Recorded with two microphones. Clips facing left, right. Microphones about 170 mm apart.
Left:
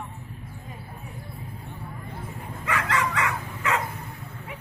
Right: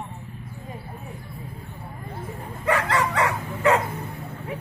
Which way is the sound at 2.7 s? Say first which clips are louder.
Right 4 dB; 35° right (ahead or behind).